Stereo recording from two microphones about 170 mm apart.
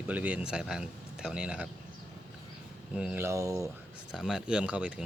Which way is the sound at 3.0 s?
15° right (ahead or behind).